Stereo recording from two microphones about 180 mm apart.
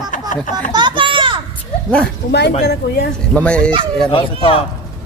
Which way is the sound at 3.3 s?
5° left (ahead or behind).